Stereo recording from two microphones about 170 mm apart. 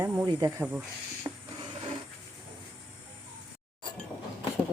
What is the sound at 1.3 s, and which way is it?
Printer, 25° right (ahead or behind).